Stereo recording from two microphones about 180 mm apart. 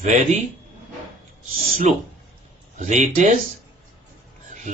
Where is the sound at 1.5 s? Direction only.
40° right (ahead or behind).